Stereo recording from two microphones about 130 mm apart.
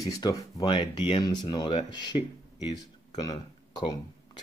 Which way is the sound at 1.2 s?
30° left (ahead or behind).